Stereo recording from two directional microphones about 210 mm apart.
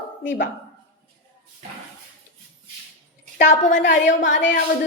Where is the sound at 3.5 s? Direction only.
35° left (ahead or behind).